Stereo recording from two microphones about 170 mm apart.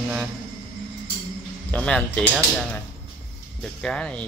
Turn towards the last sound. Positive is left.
turn(degrees=5)  # may be behind; listen again after turning